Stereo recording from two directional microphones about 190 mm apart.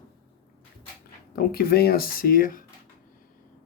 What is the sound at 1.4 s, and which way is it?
Speech, 50° left (ahead or behind).